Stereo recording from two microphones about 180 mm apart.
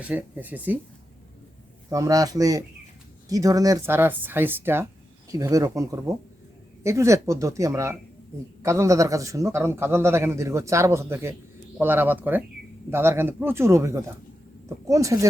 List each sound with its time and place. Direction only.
0.0 s a man's voice: 10° right (ahead or behind)
1.9 s a man's voice: 20° right (ahead or behind)